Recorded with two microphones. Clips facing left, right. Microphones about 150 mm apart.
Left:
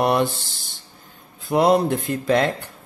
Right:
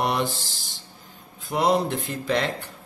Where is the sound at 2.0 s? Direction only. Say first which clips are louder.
Left 6 dB; 50° left (ahead or behind).